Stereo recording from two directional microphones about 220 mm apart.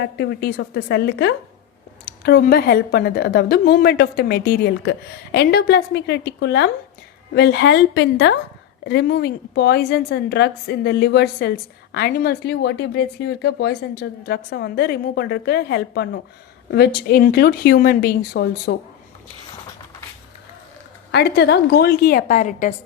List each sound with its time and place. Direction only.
0.0 s a woman's voice: 45° left (ahead or behind)
21.1 s a woman's voice: 50° left (ahead or behind)